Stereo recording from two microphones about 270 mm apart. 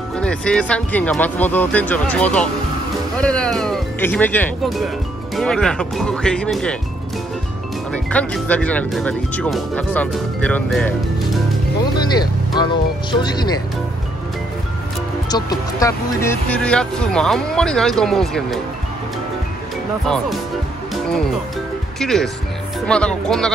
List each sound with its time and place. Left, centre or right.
0.2 s speech: centre
7.9 s speech: centre
12.2 s speech: centre
15.2 s speech: centre
20.9 s music: centre
22.0 s speech: centre